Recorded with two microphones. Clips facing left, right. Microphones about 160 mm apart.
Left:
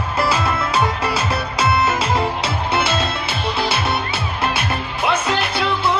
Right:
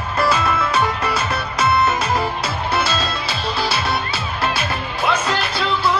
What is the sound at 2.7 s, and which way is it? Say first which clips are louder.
Music: left 1 dB; 20° left (ahead or behind).